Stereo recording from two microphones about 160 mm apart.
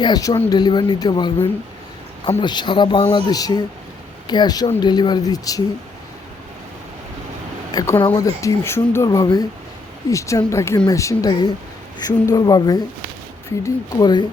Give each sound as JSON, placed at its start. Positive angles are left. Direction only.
{"t": 0.0, "sound": "speech", "side_deg": 25}
{"t": 2.4, "sound": "speech", "side_deg": 30}
{"t": 7.7, "sound": "speech", "side_deg": 25}